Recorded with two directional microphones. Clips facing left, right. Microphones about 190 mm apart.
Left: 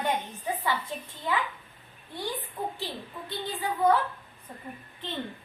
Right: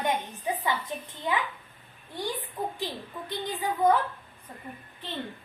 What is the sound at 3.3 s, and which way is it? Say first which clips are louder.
Speech: right 1 dB; 15° right (ahead or behind).